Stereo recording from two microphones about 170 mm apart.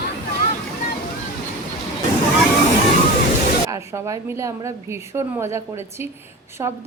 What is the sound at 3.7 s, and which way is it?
A woman's voice, 15° right (ahead or behind).